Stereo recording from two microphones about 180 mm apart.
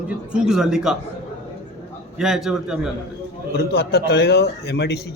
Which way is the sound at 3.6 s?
65° left (ahead or behind).